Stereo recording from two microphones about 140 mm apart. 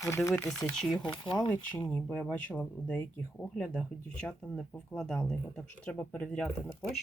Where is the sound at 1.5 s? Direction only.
10° left (ahead or behind).